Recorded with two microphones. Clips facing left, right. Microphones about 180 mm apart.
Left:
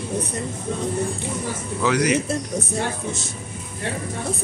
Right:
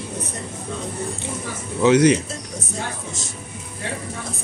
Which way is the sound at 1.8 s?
25° right (ahead or behind).